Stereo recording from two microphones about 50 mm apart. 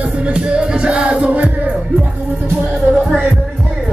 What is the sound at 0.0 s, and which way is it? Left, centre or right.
Music, right.